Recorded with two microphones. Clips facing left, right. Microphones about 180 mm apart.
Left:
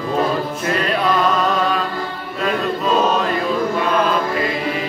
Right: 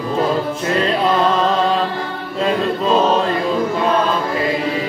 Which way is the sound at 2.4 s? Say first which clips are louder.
Right 2 dB; 30° right (ahead or behind).